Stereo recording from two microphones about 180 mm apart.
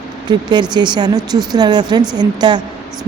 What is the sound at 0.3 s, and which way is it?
Speech, 25° right (ahead or behind).